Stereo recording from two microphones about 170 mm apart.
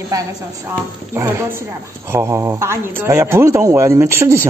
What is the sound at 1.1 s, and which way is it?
A woman's voice, 15° right (ahead or behind).